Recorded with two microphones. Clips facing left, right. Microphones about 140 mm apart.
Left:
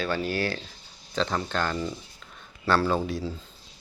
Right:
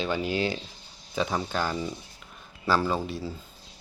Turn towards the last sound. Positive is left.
turn(degrees=0)  # may be behind; listen again after turning